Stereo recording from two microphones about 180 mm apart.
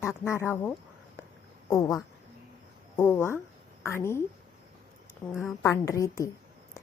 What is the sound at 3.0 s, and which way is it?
A woman's voice, 15° left (ahead or behind).